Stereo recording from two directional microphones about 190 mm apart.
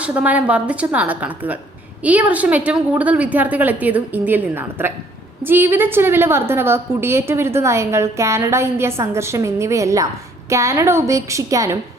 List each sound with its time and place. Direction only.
0.0 s a woman's voice: 5° right (ahead or behind)